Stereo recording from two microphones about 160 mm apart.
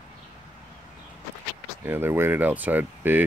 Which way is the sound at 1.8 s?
15° right (ahead or behind).